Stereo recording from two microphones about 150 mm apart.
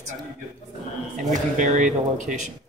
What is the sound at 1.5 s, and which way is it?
Speech, 55° right (ahead or behind).